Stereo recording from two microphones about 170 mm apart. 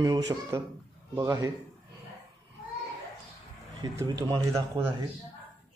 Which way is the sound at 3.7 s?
20° right (ahead or behind).